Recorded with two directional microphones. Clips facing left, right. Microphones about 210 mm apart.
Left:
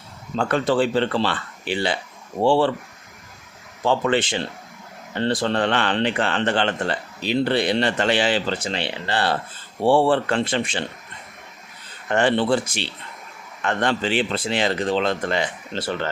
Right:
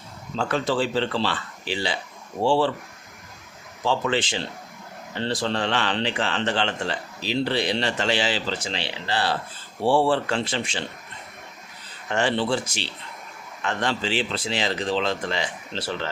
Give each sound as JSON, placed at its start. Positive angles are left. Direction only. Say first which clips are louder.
{"t": 0.3, "sound": "a man's voice", "louder": "left 4 dB", "side_deg": 55}
{"t": 3.8, "sound": "a man's voice", "louder": "left 4 dB", "side_deg": 55}
{"t": 12.0, "sound": "a man's voice", "louder": "left 4 dB", "side_deg": 55}